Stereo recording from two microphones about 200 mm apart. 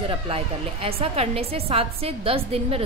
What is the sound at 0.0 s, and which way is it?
A woman's voice, 25° right (ahead or behind).